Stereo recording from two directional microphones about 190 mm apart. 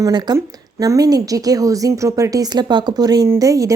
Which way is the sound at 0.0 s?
20° right (ahead or behind).